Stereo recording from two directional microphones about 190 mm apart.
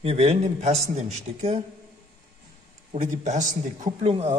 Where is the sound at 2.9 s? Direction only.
40° right (ahead or behind).